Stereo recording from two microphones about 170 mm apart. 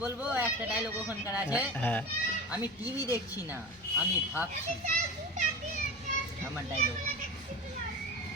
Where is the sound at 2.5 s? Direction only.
10° right (ahead or behind).